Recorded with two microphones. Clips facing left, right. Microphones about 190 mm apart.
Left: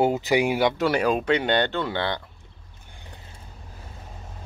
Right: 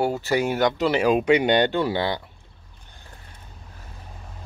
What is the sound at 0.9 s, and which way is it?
Speech, 10° right (ahead or behind).